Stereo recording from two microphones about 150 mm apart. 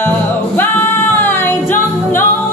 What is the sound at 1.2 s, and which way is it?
Music, 15° left (ahead or behind).